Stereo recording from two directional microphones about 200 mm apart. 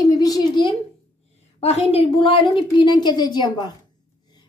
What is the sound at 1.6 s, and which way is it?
A woman's voice, 30° left (ahead or behind).